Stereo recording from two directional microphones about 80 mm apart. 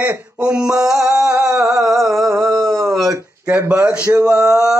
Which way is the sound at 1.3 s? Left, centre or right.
Right.